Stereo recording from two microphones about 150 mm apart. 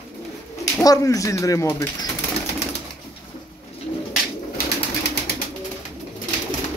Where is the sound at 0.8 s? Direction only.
25° left (ahead or behind).